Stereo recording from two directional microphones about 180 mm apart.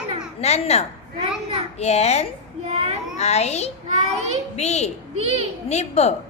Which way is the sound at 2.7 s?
35° right (ahead or behind).